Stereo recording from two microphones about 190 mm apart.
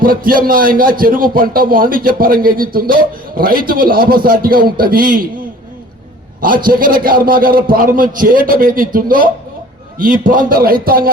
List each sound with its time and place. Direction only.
0.0 s a man's voice: 50° right (ahead or behind)
6.4 s a man's voice: 50° right (ahead or behind)